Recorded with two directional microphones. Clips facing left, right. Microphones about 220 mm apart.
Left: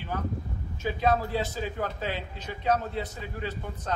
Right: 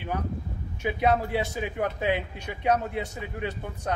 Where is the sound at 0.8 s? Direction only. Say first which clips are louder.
Right 2 dB; 15° right (ahead or behind).